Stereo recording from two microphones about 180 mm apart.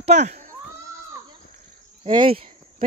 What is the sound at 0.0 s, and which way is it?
Baby cry, 40° right (ahead or behind).